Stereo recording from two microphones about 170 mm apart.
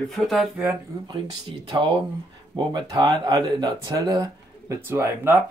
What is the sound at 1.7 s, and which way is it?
Speech, 30° right (ahead or behind).